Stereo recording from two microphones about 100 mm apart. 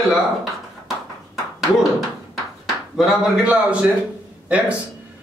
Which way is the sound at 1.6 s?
Centre (ahead or behind).